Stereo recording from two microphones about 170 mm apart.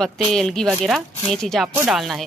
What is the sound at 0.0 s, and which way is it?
Speech, centre (ahead or behind).